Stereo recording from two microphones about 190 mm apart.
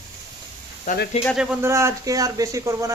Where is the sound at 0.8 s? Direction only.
45° left (ahead or behind).